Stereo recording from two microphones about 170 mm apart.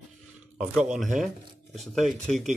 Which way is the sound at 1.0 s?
Centre (ahead or behind).